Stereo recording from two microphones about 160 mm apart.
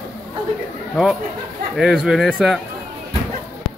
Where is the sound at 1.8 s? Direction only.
Centre (ahead or behind).